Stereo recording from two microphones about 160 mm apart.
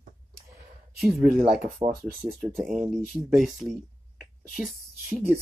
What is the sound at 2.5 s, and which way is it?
Speech, centre (ahead or behind).